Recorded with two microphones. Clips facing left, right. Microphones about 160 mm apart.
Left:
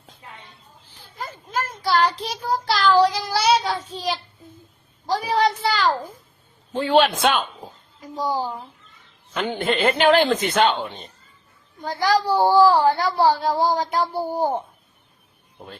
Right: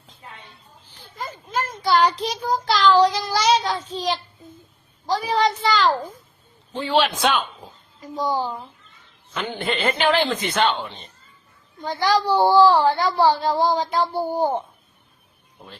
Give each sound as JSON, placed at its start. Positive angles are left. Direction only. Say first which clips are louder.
{"t": 1.2, "sound": "child singing", "louder": "right 1 dB", "side_deg": 5}
{"t": 5.0, "sound": "speech", "louder": "even", "side_deg": 10}
{"t": 6.8, "sound": "a man's voice", "louder": "left 2 dB", "side_deg": 50}
{"t": 8.0, "sound": "a child's voice", "louder": "right 1 dB", "side_deg": 5}
{"t": 10.0, "sound": "a man's voice", "louder": "left 4 dB", "side_deg": 50}
{"t": 11.9, "sound": "speech", "louder": "even", "side_deg": 10}